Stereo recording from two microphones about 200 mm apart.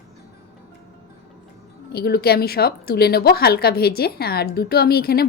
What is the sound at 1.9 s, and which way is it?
A woman's voice, 50° left (ahead or behind).